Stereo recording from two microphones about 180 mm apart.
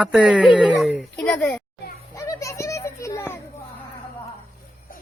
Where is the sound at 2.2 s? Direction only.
15° left (ahead or behind).